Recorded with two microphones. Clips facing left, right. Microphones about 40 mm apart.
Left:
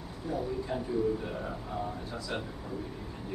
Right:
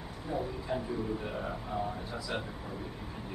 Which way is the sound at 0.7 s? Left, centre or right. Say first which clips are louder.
Left 6 dB; centre.